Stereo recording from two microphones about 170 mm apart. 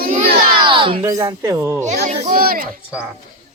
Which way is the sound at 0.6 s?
30° right (ahead or behind).